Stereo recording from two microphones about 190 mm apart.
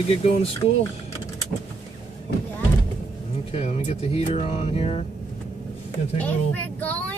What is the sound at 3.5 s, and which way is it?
Speech, 30° left (ahead or behind).